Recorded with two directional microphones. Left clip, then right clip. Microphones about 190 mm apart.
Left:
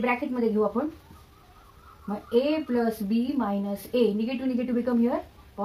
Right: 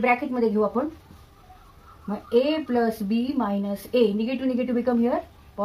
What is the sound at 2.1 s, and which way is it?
Speech, 5° left (ahead or behind).